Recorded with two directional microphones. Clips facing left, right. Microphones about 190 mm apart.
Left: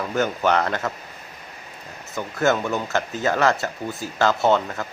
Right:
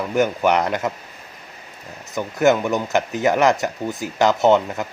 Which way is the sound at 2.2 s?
15° right (ahead or behind).